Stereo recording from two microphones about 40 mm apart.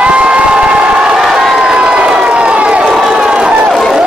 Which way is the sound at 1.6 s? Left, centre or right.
Right.